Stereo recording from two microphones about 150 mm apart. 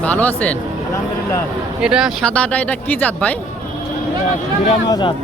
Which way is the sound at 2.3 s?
10° left (ahead or behind).